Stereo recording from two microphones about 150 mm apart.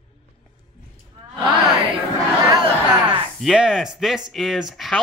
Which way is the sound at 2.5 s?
35° right (ahead or behind).